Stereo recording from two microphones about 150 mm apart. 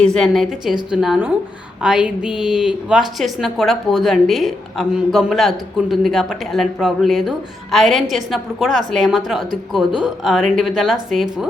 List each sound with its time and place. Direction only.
0.0 s a woman's voice: 5° left (ahead or behind)